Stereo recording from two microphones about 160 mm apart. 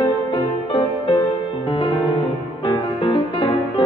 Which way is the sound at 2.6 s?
30° left (ahead or behind).